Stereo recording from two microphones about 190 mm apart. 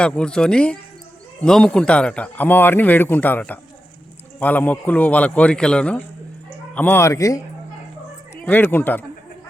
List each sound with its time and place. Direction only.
0.0 s speech: 5° left (ahead or behind)
8.4 s speech: 10° left (ahead or behind)